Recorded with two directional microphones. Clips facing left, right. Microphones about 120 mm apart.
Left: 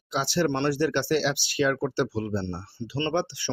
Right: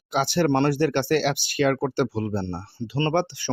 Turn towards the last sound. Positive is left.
turn(degrees=-50)  # may be behind; listen again after turning